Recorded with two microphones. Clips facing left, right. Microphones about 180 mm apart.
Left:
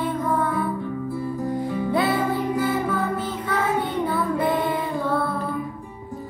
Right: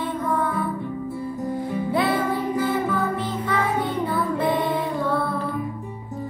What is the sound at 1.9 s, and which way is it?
Music, centre (ahead or behind).